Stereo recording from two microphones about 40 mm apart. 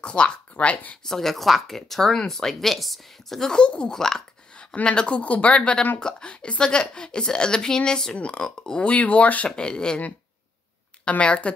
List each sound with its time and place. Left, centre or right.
0.0 s speech: left
1.0 s speech: centre
3.3 s speech: centre
3.9 s speech: centre
4.8 s speech: left
5.2 s speech: left
5.9 s speech: left
8.2 s speech: left
8.5 s speech: centre
8.8 s speech: left
9.6 s speech: left
11.1 s speech: left